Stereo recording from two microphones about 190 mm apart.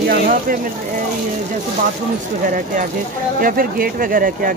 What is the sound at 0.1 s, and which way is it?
Speech, 50° right (ahead or behind).